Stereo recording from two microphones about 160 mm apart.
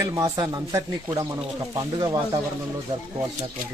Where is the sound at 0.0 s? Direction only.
20° right (ahead or behind).